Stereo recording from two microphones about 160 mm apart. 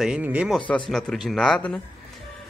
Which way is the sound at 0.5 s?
5° left (ahead or behind).